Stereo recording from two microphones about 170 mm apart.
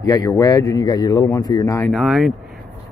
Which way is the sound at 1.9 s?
Centre (ahead or behind).